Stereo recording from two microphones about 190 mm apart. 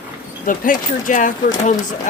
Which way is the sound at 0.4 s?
45° left (ahead or behind).